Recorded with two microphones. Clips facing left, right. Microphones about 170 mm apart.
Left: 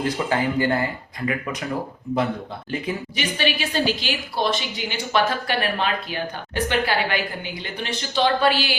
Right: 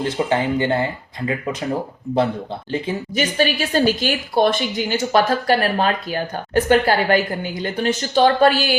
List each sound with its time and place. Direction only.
0.0 s speech: 25° right (ahead or behind)
3.2 s speech: 45° right (ahead or behind)